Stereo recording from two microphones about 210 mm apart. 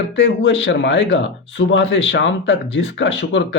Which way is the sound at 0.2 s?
60° left (ahead or behind).